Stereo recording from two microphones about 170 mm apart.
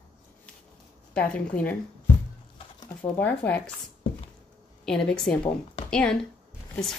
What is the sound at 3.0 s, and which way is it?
Speech, 10° left (ahead or behind).